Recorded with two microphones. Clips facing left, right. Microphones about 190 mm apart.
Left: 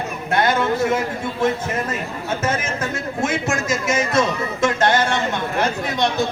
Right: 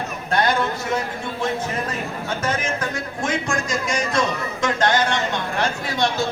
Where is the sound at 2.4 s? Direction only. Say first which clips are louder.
Even; 25° left (ahead or behind).